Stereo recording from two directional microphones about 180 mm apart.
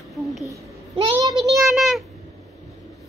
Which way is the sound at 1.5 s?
Centre (ahead or behind).